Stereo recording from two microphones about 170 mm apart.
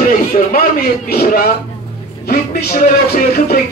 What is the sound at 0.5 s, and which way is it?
A man's voice, 60° left (ahead or behind).